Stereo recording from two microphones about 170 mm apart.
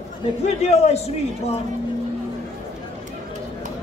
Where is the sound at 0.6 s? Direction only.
40° left (ahead or behind).